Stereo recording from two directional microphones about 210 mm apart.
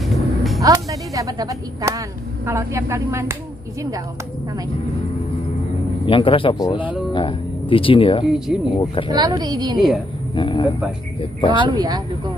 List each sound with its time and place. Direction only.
0.0 s a sound: centre (ahead or behind)
0.6 s speech: 15° right (ahead or behind)
6.0 s a man's voice: 25° left (ahead or behind)
9.1 s speech: 20° right (ahead or behind)
10.3 s a man's voice: 20° left (ahead or behind)
11.5 s speech: 20° right (ahead or behind)